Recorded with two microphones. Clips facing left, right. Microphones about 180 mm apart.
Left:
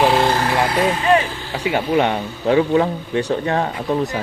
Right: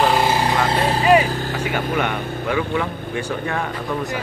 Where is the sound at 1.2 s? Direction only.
45° right (ahead or behind).